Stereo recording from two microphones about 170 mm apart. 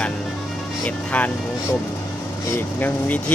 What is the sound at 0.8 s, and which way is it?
Speech, 10° left (ahead or behind).